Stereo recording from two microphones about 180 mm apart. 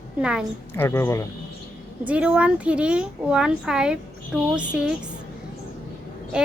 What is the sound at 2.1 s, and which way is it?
A child's voice, 5° right (ahead or behind).